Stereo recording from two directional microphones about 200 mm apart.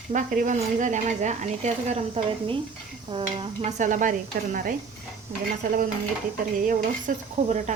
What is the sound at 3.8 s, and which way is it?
Speech, 40° right (ahead or behind).